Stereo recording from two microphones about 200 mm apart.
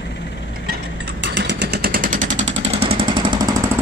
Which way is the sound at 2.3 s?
70° right (ahead or behind).